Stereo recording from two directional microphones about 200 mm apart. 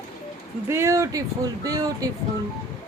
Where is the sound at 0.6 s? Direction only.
15° right (ahead or behind).